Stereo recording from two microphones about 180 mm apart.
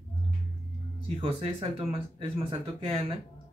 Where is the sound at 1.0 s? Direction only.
30° right (ahead or behind).